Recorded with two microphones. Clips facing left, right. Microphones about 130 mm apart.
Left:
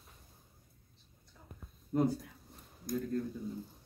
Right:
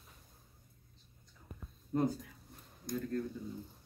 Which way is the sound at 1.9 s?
Centre (ahead or behind).